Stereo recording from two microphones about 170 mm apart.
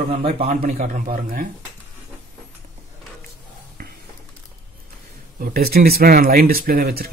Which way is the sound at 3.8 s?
60° right (ahead or behind).